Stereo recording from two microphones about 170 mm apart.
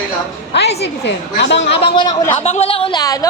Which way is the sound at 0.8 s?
85° left.